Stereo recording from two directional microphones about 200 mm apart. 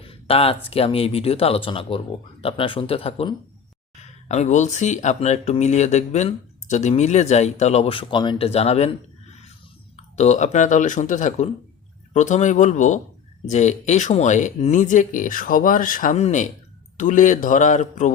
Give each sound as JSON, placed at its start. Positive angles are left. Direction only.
{"t": 0.0, "sound": "speech", "side_deg": 30}
{"t": 10.2, "sound": "speech", "side_deg": 35}